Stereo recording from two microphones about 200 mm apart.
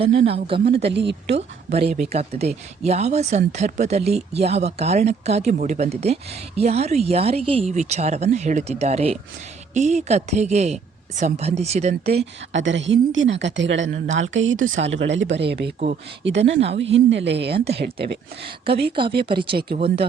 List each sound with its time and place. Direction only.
0.0 s speech: 30° right (ahead or behind)
0.9 s speech: 60° right (ahead or behind)
1.4 s speech: 30° right (ahead or behind)
12.5 s speech: 65° right (ahead or behind)
14.8 s speech: 65° right (ahead or behind)
18.4 s speech: 25° right (ahead or behind)